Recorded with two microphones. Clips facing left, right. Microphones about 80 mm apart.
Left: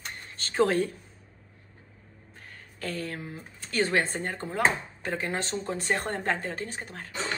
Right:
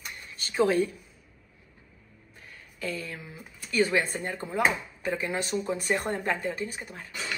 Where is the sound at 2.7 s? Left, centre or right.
Left.